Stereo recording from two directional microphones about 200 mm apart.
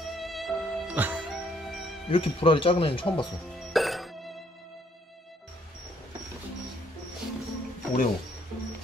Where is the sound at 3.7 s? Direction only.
Centre (ahead or behind).